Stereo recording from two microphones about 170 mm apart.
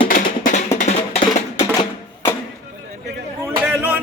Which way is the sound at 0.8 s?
40° left (ahead or behind).